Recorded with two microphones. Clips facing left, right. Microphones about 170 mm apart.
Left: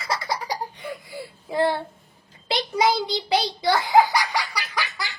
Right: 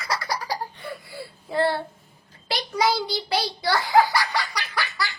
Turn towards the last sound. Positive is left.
turn(degrees=15)  # may be behind; listen again after turning